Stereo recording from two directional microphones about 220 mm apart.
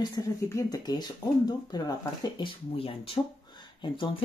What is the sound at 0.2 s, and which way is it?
Speech, 15° left (ahead or behind).